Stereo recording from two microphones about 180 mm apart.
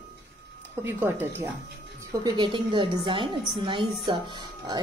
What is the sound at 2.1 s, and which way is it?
A woman's voice, 25° right (ahead or behind).